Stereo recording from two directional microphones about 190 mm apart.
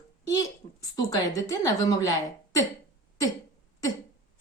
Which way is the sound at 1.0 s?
15° left (ahead or behind).